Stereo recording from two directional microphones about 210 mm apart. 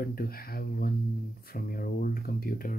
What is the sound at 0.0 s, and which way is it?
Speech, 45° left (ahead or behind).